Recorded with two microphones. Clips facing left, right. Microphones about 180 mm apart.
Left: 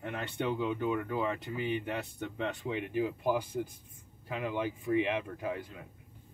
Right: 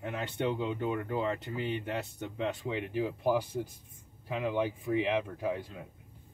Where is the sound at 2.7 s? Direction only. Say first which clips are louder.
Even; 35° right (ahead or behind).